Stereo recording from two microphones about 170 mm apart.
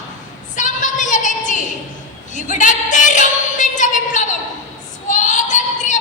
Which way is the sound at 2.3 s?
45° left (ahead or behind).